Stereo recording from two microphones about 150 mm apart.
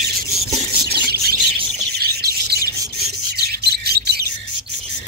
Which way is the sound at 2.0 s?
90° right.